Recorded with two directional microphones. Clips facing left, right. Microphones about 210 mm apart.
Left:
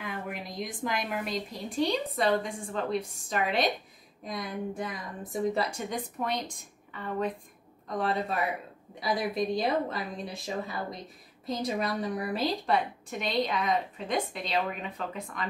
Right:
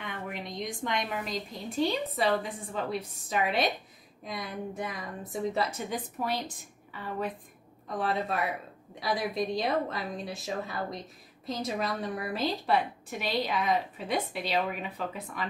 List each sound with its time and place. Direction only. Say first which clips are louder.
0.0 s a woman's voice: left 1 dB; 5° left (ahead or behind)
9.0 s a woman's voice: left 1 dB; centre (ahead or behind)